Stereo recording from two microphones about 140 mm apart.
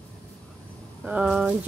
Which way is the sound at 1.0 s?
5° right (ahead or behind).